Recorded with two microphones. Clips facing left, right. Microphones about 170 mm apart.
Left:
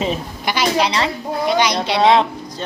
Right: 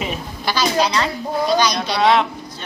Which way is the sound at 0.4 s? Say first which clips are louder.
Left 1 dB; 25° left (ahead or behind).